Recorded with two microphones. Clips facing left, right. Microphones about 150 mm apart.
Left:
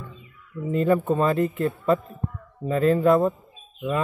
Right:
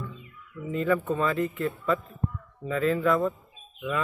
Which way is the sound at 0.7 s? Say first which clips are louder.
Left 5 dB; 40° left (ahead or behind).